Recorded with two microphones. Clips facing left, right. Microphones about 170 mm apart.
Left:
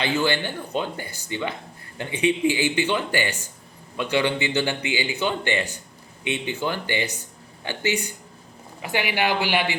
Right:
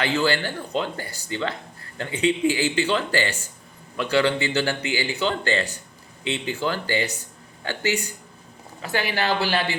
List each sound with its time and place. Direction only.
0.0 s speech: 20° left (ahead or behind)